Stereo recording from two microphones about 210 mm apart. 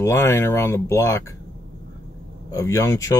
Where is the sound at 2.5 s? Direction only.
15° left (ahead or behind).